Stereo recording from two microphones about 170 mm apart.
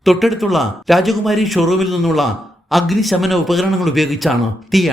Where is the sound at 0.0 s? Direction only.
Centre (ahead or behind).